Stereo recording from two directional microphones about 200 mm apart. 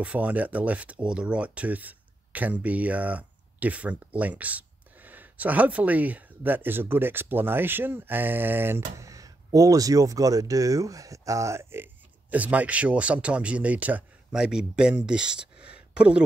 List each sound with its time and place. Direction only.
0.0 s speech: 5° right (ahead or behind)